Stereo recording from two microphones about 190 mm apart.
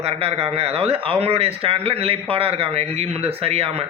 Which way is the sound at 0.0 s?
30° right (ahead or behind).